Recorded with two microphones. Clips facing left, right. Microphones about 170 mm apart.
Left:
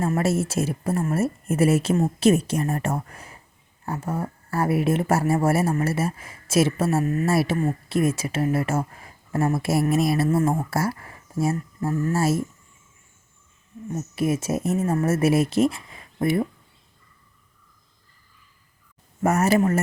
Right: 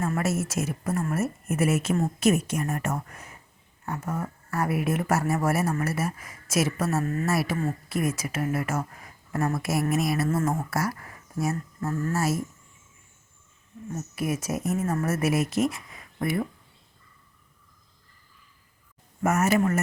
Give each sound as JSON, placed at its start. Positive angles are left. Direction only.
{"t": 0.1, "sound": "a woman's voice", "side_deg": 30}
{"t": 13.8, "sound": "speech", "side_deg": 20}
{"t": 19.2, "sound": "a woman's voice", "side_deg": 35}